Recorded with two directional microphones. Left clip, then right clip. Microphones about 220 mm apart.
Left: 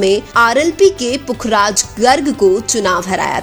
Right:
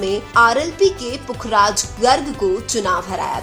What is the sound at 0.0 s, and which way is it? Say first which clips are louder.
A woman's voice: left 3 dB; 30° left (ahead or behind).